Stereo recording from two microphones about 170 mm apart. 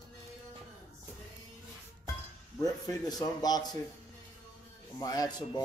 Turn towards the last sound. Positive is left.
turn(degrees=25)  # may be behind; listen again after turning